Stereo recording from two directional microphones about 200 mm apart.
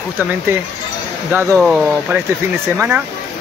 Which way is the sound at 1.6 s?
Centre (ahead or behind).